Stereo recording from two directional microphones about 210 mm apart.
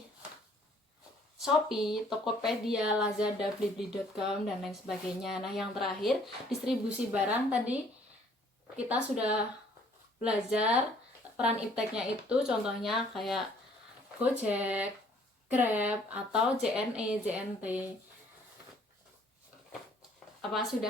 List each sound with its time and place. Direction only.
1.4 s speech: centre (ahead or behind)